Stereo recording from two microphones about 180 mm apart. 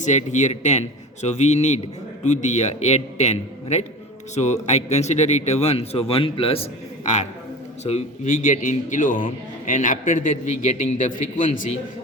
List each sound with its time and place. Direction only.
0.0 s a man's voice: 40° left (ahead or behind)